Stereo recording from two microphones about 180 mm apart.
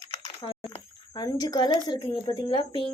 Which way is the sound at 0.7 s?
25° left (ahead or behind).